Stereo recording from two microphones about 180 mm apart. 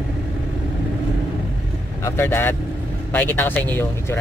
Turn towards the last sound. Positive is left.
turn(degrees=10)  # may be behind; listen again after turning